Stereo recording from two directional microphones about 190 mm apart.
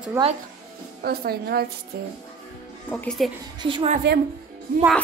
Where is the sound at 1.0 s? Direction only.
55° right (ahead or behind).